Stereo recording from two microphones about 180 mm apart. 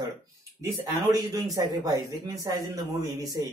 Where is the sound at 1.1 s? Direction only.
20° right (ahead or behind).